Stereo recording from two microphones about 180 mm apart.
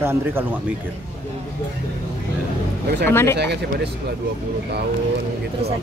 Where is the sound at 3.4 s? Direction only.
70° right (ahead or behind).